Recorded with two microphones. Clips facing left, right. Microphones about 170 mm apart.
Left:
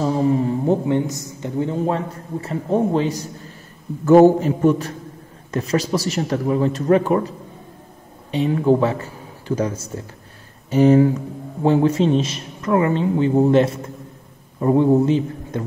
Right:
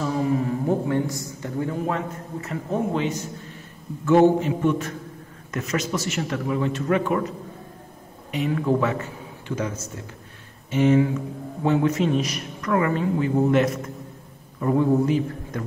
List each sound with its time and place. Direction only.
0.0 s a woman's voice: 30° left (ahead or behind)